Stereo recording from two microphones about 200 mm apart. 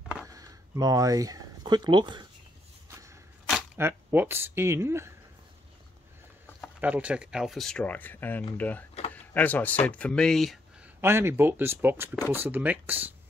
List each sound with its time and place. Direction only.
0.3 s speech: 15° right (ahead or behind)
2.9 s a sound: 15° right (ahead or behind)
3.7 s speech: 10° right (ahead or behind)
6.8 s speech: 5° right (ahead or behind)
11.0 s speech: 10° right (ahead or behind)